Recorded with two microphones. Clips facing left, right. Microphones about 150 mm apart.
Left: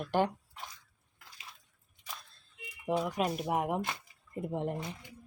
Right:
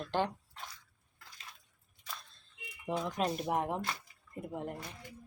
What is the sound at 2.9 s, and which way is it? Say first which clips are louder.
Speech: left 3 dB; 10° left (ahead or behind).